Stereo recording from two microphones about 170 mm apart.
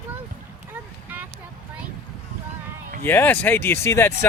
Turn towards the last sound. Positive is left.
turn(degrees=15)  # may be behind; listen again after turning